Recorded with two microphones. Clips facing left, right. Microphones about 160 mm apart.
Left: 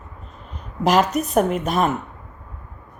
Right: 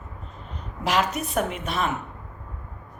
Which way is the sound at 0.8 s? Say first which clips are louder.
Left 7 dB; 40° left (ahead or behind).